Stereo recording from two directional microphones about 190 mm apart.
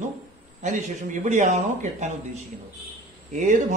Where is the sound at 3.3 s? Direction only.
40° right (ahead or behind).